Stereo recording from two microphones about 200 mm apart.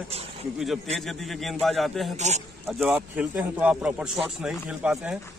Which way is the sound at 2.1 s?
35° right (ahead or behind).